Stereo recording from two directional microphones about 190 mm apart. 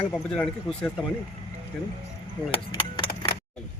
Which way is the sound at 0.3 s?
5° left (ahead or behind).